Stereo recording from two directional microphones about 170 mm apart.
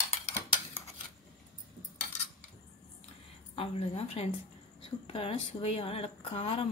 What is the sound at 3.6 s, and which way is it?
Speech, 35° left (ahead or behind).